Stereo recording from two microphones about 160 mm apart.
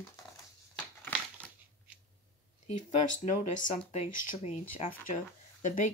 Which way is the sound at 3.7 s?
40° left (ahead or behind).